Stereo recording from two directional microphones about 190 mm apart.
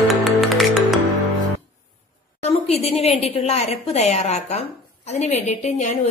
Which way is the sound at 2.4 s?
35° left (ahead or behind).